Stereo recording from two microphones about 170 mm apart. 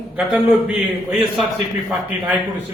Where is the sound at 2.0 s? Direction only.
10° right (ahead or behind).